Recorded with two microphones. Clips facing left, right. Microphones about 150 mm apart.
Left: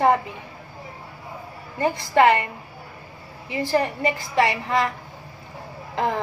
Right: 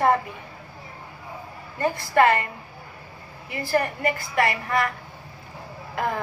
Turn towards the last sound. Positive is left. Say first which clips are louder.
# left 3 dB
turn(degrees=25)  # may be behind; listen again after turning